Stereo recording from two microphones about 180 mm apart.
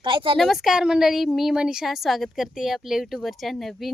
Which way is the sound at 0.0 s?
30° right (ahead or behind).